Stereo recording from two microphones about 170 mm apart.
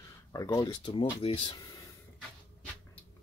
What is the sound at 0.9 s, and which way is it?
Speech, 35° left (ahead or behind).